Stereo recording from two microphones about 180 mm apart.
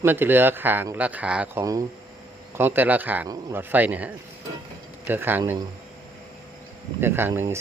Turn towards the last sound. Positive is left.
turn(degrees=-15)  # may be behind; listen again after turning